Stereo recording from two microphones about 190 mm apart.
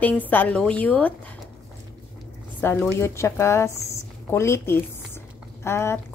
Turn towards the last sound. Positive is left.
turn(degrees=15)  # may be behind; listen again after turning